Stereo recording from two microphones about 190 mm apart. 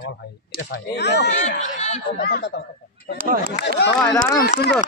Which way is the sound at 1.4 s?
40° left (ahead or behind).